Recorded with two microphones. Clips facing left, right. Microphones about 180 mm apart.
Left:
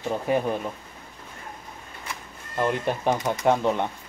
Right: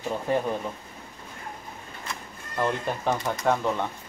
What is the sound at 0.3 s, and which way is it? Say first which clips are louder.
Speech: left 2 dB; 15° left (ahead or behind).